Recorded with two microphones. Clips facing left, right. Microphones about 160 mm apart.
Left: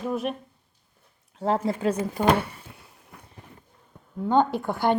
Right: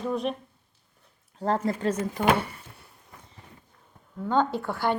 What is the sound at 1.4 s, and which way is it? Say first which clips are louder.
Speech: left 2 dB; 5° left (ahead or behind).